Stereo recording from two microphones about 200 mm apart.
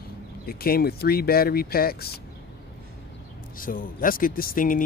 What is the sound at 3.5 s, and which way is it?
Speech, 45° left (ahead or behind).